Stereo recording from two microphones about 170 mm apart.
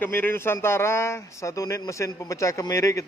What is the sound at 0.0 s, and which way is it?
A man's voice, 10° left (ahead or behind).